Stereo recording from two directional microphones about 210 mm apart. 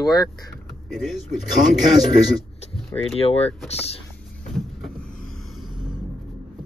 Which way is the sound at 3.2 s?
30° left (ahead or behind).